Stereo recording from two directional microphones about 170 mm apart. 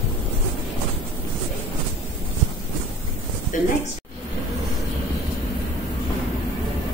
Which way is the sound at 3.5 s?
50° left (ahead or behind).